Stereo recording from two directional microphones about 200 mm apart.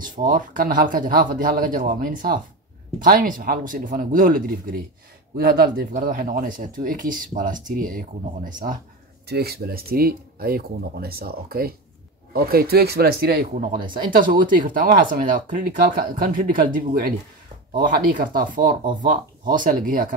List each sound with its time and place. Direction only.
0.0 s speech: 40° right (ahead or behind)